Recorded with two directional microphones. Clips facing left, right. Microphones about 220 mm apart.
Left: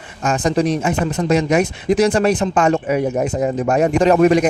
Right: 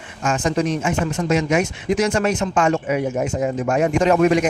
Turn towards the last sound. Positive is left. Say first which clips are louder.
# left 3 dB
turn(degrees=35)  # may be behind; listen again after turning